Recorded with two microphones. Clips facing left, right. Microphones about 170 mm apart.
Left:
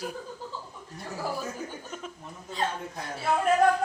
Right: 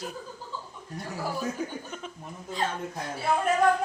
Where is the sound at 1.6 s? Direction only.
65° right (ahead or behind).